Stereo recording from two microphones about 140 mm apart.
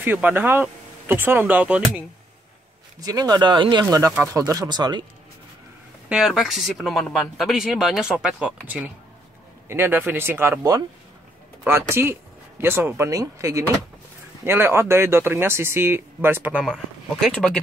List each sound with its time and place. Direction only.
0.0 s speech: 15° right (ahead or behind)
3.0 s speech: 30° right (ahead or behind)
4.2 s speech: 20° right (ahead or behind)
6.0 s speech: 5° right (ahead or behind)
11.6 s speech: 15° right (ahead or behind)
16.6 s speech: centre (ahead or behind)